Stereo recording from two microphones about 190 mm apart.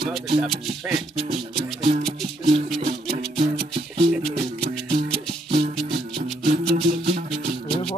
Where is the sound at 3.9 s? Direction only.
35° right (ahead or behind).